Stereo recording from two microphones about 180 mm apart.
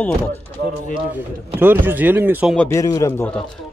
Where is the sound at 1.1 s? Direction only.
10° right (ahead or behind).